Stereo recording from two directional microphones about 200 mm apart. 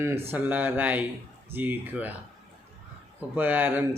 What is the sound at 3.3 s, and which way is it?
Speech, 10° right (ahead or behind).